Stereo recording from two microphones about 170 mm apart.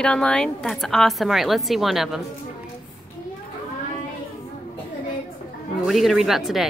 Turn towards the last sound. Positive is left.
turn(degrees=0)  # may be behind; listen again after turning